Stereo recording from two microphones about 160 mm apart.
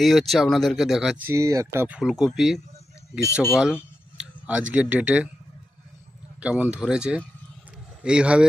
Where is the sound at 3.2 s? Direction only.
15° left (ahead or behind).